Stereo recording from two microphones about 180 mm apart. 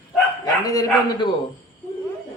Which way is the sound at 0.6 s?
20° left (ahead or behind).